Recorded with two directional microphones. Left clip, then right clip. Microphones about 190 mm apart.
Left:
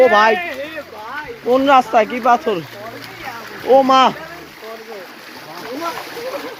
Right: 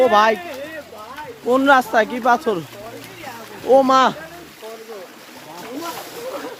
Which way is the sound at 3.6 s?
15° right (ahead or behind).